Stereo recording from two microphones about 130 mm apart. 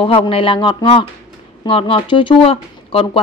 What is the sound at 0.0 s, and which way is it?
A woman's voice, 45° left (ahead or behind).